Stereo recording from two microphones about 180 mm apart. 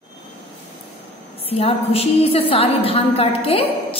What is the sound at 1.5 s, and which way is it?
A woman's voice, 30° left (ahead or behind).